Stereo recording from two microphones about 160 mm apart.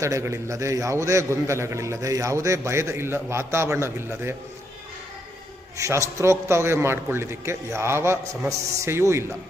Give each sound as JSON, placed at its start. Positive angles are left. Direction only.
{"t": 0.0, "sound": "a man's voice", "side_deg": -20}
{"t": 5.7, "sound": "a man's voice", "side_deg": -20}